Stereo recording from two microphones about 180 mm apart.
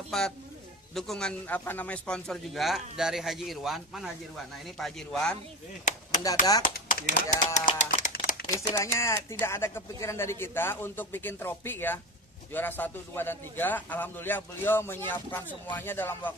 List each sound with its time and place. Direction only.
0.1 s a man's voice: centre (ahead or behind)
6.6 s speech: 50° left (ahead or behind)
7.8 s a sound: 45° left (ahead or behind)
8.5 s speech: 15° left (ahead or behind)